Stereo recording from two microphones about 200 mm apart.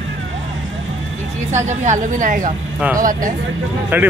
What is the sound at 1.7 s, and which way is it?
A woman's voice, 35° right (ahead or behind).